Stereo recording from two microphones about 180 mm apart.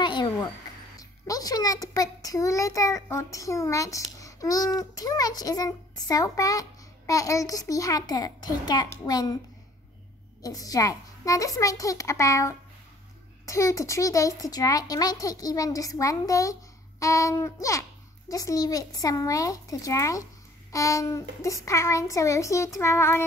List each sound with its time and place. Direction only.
0.0 s a sound: 25° left (ahead or behind)
0.9 s a child's voice: 20° left (ahead or behind)
10.4 s a child's voice: 20° left (ahead or behind)